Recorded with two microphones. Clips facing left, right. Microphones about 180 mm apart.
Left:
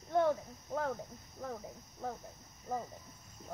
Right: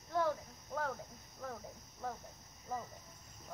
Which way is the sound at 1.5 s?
25° left (ahead or behind).